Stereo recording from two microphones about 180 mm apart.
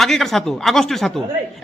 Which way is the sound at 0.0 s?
Centre (ahead or behind).